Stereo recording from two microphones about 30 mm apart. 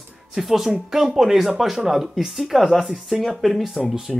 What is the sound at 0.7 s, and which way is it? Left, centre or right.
Speech, centre.